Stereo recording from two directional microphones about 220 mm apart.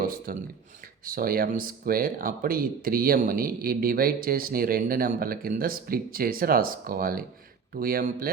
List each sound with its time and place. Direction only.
0.0 s speech: 40° right (ahead or behind)